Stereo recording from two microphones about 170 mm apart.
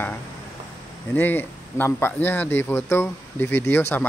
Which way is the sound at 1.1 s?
10° left (ahead or behind).